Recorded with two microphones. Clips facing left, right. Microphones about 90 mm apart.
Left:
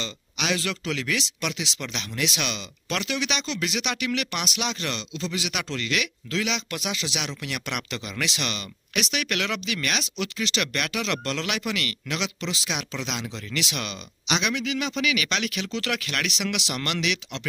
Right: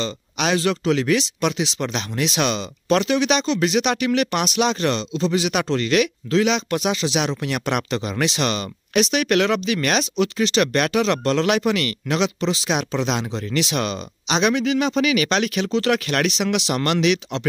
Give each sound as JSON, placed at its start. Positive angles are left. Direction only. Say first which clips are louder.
{"t": 0.0, "sound": "speech", "louder": "right 8 dB", "side_deg": -35}